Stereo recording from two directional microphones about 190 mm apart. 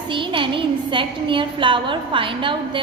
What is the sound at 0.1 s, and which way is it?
A woman's voice, 25° right (ahead or behind).